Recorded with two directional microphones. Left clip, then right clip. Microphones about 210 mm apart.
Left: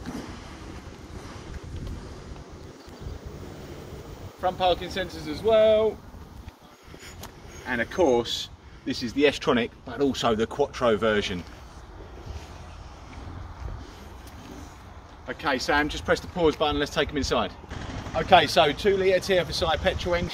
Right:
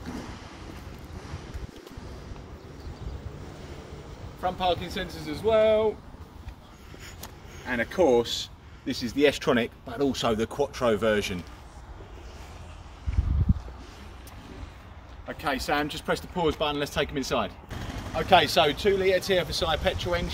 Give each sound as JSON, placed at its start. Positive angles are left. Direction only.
{"t": 4.4, "sound": "speech", "side_deg": -55}
{"t": 7.6, "sound": "speech", "side_deg": -55}
{"t": 15.2, "sound": "speech", "side_deg": -50}
{"t": 18.1, "sound": "speech", "side_deg": 0}